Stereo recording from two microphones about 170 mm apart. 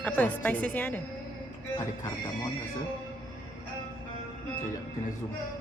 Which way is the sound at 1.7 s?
25° left (ahead or behind).